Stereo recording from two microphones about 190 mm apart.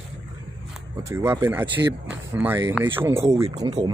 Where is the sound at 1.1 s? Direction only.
10° right (ahead or behind).